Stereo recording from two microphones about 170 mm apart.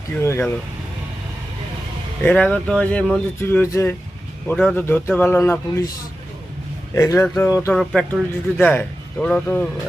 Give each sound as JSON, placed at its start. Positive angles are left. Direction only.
{"t": 0.2, "sound": "a man's voice", "side_deg": 15}
{"t": 2.2, "sound": "a man's voice", "side_deg": 5}
{"t": 6.9, "sound": "a man's voice", "side_deg": 20}
{"t": 7.7, "sound": "a man's voice", "side_deg": 0}